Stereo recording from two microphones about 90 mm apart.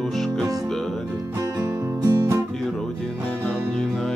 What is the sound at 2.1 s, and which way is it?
Music, 25° right (ahead or behind).